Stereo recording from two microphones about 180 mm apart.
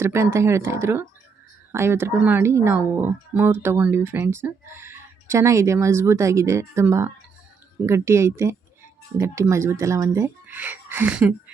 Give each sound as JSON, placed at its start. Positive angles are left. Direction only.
{"t": 0.0, "sound": "speech", "side_deg": -15}